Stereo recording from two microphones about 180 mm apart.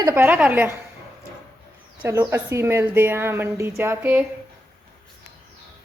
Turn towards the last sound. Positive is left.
turn(degrees=-10)  # may be behind; listen again after turning